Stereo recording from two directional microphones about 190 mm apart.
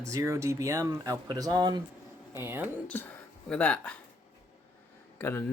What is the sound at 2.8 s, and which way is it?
Speech, 10° left (ahead or behind).